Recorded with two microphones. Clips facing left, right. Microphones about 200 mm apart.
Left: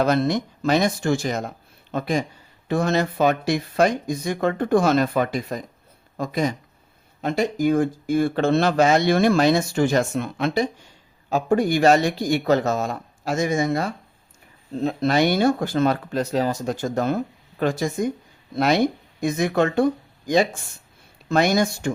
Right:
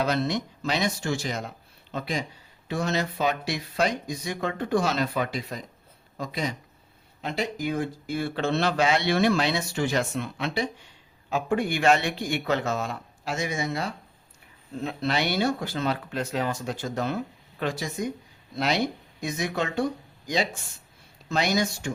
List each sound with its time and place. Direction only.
0.0 s speech: 50° left (ahead or behind)
14.7 s speech: 35° left (ahead or behind); by 21.9 s 55° left (ahead or behind)